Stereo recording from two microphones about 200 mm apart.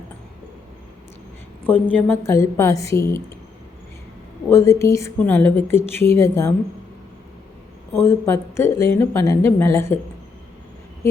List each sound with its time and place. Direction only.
1.6 s a woman's voice: 10° left (ahead or behind)
4.4 s a woman's voice: 15° left (ahead or behind)
7.9 s a woman's voice: 10° left (ahead or behind)